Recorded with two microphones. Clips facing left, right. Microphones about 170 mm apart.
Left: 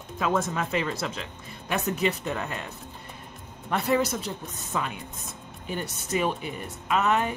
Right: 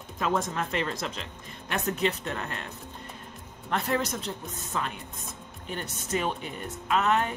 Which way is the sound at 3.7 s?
10° left (ahead or behind).